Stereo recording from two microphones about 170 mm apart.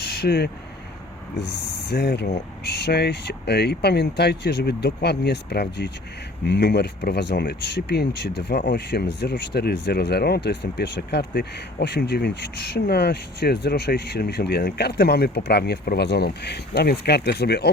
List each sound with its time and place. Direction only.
0.0 s vehicle: 80° left
1.4 s speech: 80° left